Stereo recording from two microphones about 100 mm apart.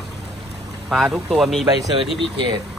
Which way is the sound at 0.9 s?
Centre (ahead or behind).